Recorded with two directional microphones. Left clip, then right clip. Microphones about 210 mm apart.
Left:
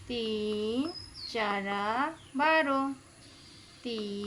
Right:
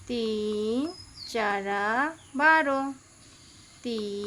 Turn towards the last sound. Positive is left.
turn(degrees=-45)  # may be behind; listen again after turning